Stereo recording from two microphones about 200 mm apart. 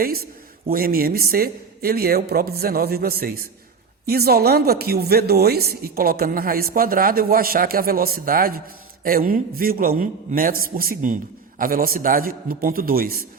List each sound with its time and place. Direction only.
0.7 s a woman's voice: 45° right (ahead or behind)